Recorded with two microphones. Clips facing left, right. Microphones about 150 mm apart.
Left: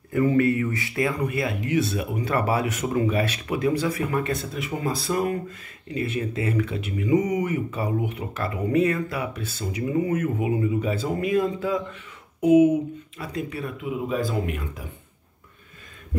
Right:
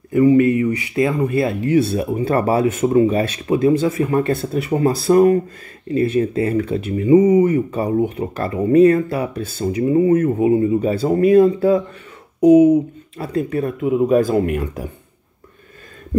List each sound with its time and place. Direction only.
0.1 s speech: 20° right (ahead or behind); by 14.6 s 50° right (ahead or behind)